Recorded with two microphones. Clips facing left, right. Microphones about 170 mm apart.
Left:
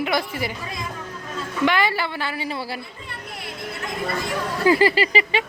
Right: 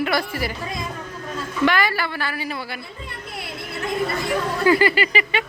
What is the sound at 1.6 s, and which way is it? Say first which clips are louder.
A woman's voice: even; 25° left (ahead or behind).